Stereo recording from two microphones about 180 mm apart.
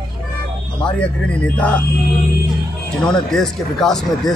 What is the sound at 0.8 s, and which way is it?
Speech, 5° left (ahead or behind).